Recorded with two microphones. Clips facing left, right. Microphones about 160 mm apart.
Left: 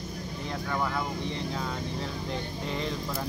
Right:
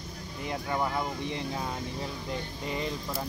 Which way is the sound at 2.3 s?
5° right (ahead or behind).